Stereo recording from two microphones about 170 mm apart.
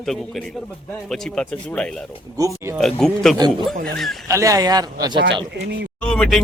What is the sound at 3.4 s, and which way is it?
Speech, 25° right (ahead or behind).